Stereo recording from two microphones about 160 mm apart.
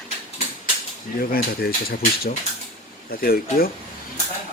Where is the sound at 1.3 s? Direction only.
70° left (ahead or behind).